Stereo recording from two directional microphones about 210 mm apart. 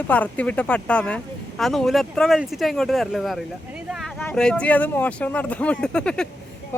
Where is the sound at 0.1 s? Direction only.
5° left (ahead or behind).